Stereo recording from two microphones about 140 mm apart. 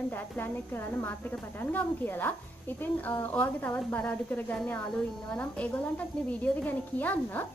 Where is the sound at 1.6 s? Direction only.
15° left (ahead or behind).